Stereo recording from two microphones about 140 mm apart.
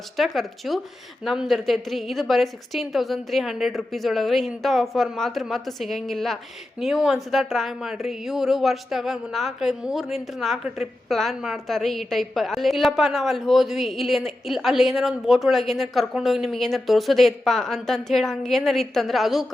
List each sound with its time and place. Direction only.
0.2 s a woman's voice: centre (ahead or behind)